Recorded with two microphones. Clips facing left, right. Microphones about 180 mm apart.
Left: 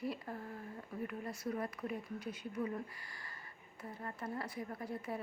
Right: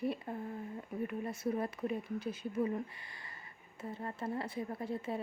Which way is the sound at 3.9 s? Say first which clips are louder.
Right 4 dB; 25° right (ahead or behind).